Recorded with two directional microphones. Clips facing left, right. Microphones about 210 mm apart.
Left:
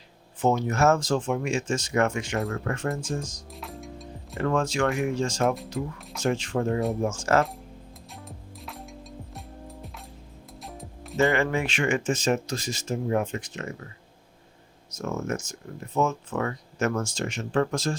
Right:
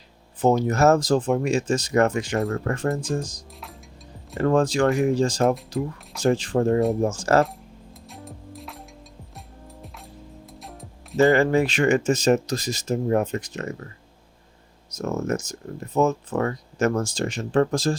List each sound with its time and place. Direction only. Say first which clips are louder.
0.4 s speech: right 4 dB; 40° right (ahead or behind)
3.6 s music: left 5 dB; centre (ahead or behind)
4.4 s speech: right 5 dB; 35° right (ahead or behind)
8.1 s music: right 6 dB; centre (ahead or behind)
11.2 s speech: right 6 dB; 35° right (ahead or behind)
14.9 s speech: right 4 dB; 40° right (ahead or behind)